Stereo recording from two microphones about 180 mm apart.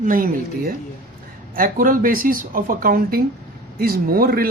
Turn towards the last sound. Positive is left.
turn(degrees=-55)  # may be behind; listen again after turning